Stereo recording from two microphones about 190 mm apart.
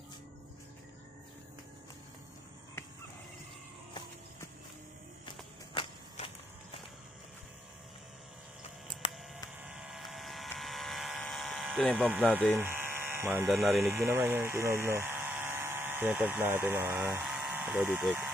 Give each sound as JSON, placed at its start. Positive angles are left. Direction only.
{"t": 5.8, "sound": "walk", "side_deg": 25}
{"t": 9.6, "sound": "vehicle", "side_deg": -5}
{"t": 10.6, "sound": "a sound", "side_deg": 0}
{"t": 12.4, "sound": "electric toothbrush", "side_deg": -10}
{"t": 13.6, "sound": "speech", "side_deg": 0}